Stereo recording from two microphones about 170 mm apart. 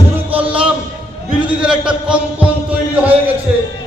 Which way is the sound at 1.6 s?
5° right (ahead or behind).